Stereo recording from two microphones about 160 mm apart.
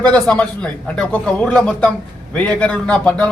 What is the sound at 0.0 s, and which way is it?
A man's voice, 5° left (ahead or behind).